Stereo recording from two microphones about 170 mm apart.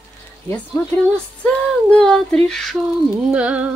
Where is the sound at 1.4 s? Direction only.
5° left (ahead or behind).